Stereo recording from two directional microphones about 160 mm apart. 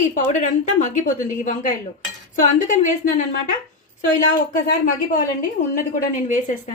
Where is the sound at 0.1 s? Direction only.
50° left (ahead or behind).